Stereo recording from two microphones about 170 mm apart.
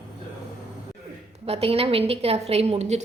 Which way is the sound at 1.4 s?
35° right (ahead or behind).